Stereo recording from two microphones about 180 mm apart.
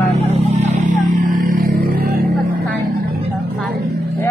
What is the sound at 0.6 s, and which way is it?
Music, 45° right (ahead or behind).